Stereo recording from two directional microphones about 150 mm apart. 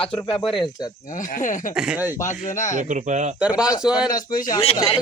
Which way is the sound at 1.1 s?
60° left (ahead or behind).